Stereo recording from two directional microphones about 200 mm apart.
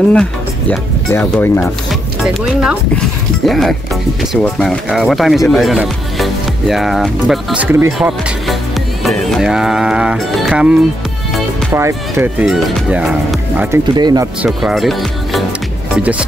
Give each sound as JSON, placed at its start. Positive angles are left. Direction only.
{"t": 0.1, "sound": "speech", "side_deg": 5}
{"t": 9.0, "sound": "music", "side_deg": 0}
{"t": 11.7, "sound": "speech", "side_deg": -10}
{"t": 13.9, "sound": "speech", "side_deg": -20}
{"t": 14.4, "sound": "speech", "side_deg": 0}